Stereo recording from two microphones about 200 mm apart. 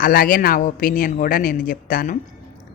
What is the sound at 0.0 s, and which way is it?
Speech, 45° left (ahead or behind).